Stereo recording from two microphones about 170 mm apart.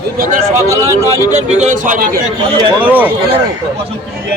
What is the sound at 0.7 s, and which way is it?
Speech, 15° left (ahead or behind).